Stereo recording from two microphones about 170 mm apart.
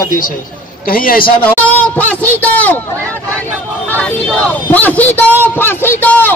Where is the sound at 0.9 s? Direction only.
55° left (ahead or behind).